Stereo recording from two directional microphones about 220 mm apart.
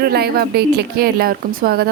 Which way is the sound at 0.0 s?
45° right (ahead or behind).